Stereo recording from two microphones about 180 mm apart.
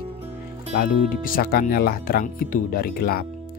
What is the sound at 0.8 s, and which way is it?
Speech, 50° left (ahead or behind).